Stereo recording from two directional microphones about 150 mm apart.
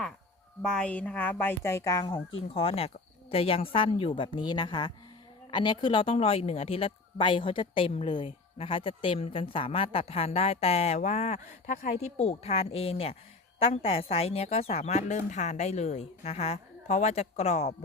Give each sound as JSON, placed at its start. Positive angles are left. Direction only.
{"t": 0.6, "sound": "a woman's voice", "side_deg": 5}